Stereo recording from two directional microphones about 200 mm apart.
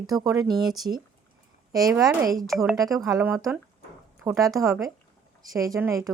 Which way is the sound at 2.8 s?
15° right (ahead or behind).